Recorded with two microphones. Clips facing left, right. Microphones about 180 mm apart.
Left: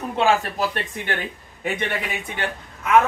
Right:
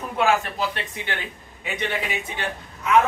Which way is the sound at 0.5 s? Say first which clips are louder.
Left 2 dB; 50° left (ahead or behind).